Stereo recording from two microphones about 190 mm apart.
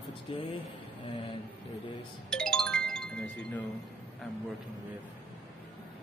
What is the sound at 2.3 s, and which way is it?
Music, 5° left (ahead or behind).